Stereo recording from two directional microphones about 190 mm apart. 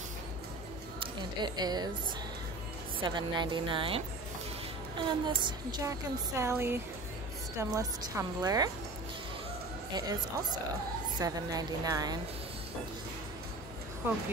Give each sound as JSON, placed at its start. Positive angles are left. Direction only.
{"t": 0.9, "sound": "a woman's voice", "side_deg": -20}
{"t": 3.0, "sound": "a woman's voice", "side_deg": -25}
{"t": 9.9, "sound": "a woman's voice", "side_deg": -20}